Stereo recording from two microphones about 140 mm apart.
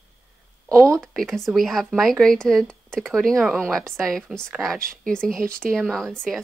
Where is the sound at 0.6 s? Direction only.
20° right (ahead or behind).